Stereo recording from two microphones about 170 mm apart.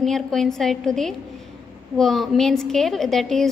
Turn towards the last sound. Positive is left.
turn(degrees=0)  # may be behind; listen again after turning